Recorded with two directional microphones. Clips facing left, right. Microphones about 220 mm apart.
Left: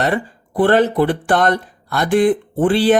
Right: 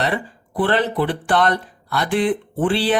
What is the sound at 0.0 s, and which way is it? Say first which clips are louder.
Speech: left 4 dB; 45° left (ahead or behind).